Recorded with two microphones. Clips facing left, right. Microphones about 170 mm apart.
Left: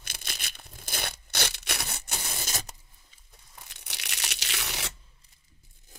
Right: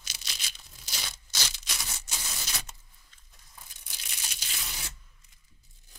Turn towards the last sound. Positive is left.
turn(degrees=75)  # may be behind; listen again after turning